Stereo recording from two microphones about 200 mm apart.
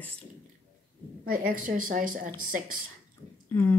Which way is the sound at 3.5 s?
10° left (ahead or behind).